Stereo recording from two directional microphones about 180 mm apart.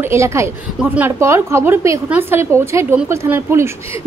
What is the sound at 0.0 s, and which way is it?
A woman's voice, 15° right (ahead or behind).